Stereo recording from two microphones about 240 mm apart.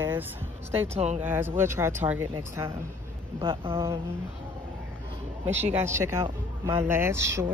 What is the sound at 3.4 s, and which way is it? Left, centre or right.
Speech, right.